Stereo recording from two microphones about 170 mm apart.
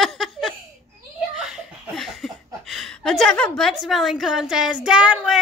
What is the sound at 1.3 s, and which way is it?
Laughter, 5° right (ahead or behind).